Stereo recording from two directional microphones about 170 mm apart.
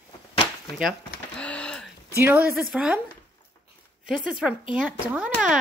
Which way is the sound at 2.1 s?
15° right (ahead or behind).